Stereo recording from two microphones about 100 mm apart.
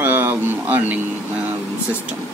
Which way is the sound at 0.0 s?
20° right (ahead or behind).